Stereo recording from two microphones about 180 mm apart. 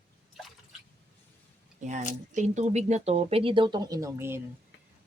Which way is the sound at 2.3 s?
40° right (ahead or behind).